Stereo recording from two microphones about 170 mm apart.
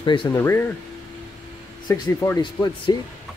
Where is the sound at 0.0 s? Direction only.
30° left (ahead or behind).